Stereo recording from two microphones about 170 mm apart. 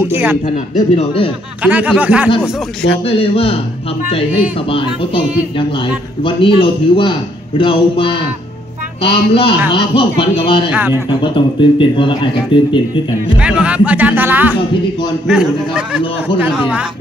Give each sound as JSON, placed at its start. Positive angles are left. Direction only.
{"t": 0.1, "sound": "speech", "side_deg": -15}
{"t": 0.7, "sound": "speech", "side_deg": 35}
{"t": 1.6, "sound": "speech", "side_deg": -10}
{"t": 3.2, "sound": "speech", "side_deg": 35}
{"t": 4.6, "sound": "speech", "side_deg": 30}
{"t": 10.7, "sound": "speech", "side_deg": -10}
{"t": 11.1, "sound": "speech", "side_deg": 30}
{"t": 13.4, "sound": "a man's voice", "side_deg": -5}